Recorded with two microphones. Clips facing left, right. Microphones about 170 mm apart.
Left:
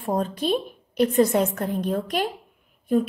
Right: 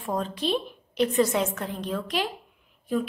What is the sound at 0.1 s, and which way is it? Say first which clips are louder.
A woman's voice: left 4 dB; 45° left (ahead or behind).